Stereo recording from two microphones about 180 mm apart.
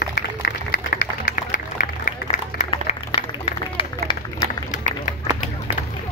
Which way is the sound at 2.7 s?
35° left (ahead or behind).